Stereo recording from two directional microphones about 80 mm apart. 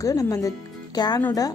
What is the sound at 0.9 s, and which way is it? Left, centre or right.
Speech, left.